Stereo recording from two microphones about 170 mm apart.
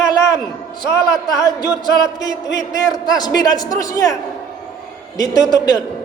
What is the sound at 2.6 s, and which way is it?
A man's voice, 25° left (ahead or behind).